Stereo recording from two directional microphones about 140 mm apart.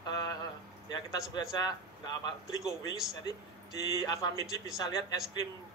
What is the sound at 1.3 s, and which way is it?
Speech, 30° left (ahead or behind).